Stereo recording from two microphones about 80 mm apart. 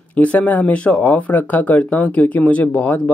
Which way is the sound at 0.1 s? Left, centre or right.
Centre.